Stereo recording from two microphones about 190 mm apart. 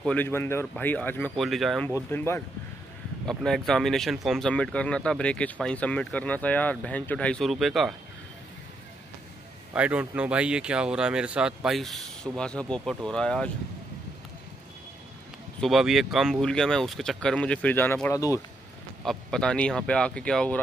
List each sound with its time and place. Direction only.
0.0 s speech: 10° left (ahead or behind)
9.8 s speech: 5° right (ahead or behind)
15.6 s speech: centre (ahead or behind); by 18.4 s 15° left (ahead or behind)
19.0 s speech: 5° left (ahead or behind)